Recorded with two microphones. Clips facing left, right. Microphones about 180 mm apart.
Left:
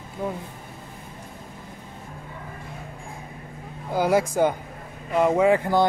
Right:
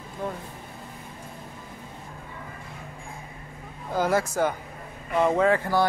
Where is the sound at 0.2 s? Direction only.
10° left (ahead or behind).